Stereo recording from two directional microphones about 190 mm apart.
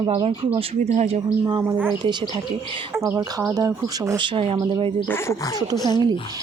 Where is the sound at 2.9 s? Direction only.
15° right (ahead or behind).